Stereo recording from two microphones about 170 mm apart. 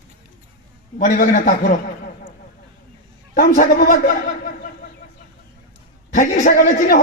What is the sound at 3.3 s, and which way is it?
Speech, 55° left (ahead or behind).